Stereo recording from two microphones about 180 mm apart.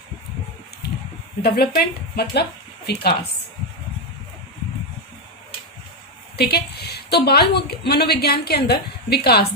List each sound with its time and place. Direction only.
1.4 s speech: 60° left (ahead or behind)
6.3 s a woman's voice: 65° left (ahead or behind)